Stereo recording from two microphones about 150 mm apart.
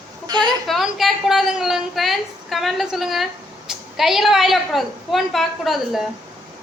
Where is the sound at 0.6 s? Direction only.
Centre (ahead or behind).